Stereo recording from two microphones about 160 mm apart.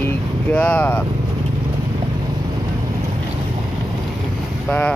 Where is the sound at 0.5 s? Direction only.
10° left (ahead or behind).